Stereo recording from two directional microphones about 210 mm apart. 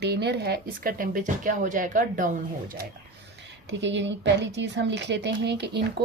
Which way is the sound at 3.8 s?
60° right (ahead or behind).